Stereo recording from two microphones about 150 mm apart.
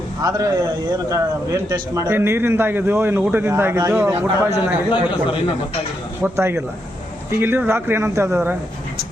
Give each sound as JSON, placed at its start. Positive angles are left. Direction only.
{"t": 0.2, "sound": "speech", "side_deg": -25}
{"t": 2.0, "sound": "a man's voice", "side_deg": -15}
{"t": 4.9, "sound": "a man's voice", "side_deg": 35}
{"t": 6.2, "sound": "a man's voice", "side_deg": -15}